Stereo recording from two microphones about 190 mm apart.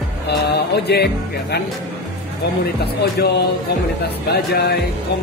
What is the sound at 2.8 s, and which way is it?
Music, 60° left (ahead or behind).